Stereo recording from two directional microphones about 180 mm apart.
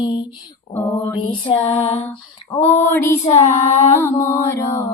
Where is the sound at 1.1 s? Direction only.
30° left (ahead or behind).